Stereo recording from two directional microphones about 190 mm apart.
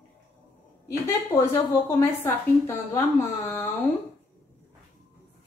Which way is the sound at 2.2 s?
10° left (ahead or behind).